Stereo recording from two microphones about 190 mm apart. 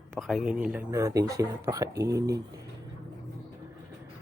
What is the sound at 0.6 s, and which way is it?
Speech, 15° right (ahead or behind).